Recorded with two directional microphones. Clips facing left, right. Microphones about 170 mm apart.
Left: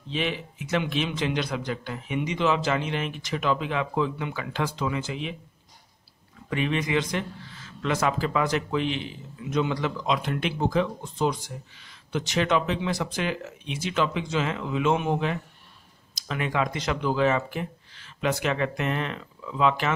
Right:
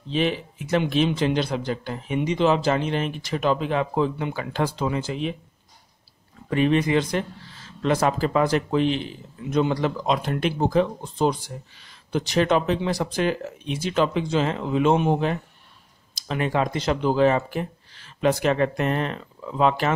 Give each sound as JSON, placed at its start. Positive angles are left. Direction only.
{"t": 0.1, "sound": "a man's voice", "side_deg": -40}
{"t": 6.5, "sound": "a man's voice", "side_deg": -40}